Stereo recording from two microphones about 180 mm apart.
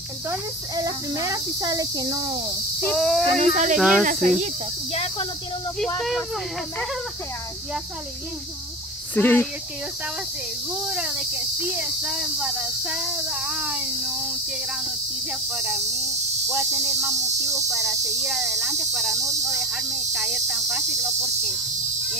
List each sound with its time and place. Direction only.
0.3 s speech: 20° right (ahead or behind)
2.8 s speech: 5° left (ahead or behind)
3.3 s speech: 40° right (ahead or behind)
3.7 s speech: centre (ahead or behind)
4.0 s speech: 45° right (ahead or behind)
5.9 s speech: 5° left (ahead or behind)
9.1 s speech: 10° left (ahead or behind)
10.7 s speech: 5° right (ahead or behind)
15.5 s speech: 5° right (ahead or behind)
16.4 s cricket: 5° right (ahead or behind)
17.6 s speech: centre (ahead or behind)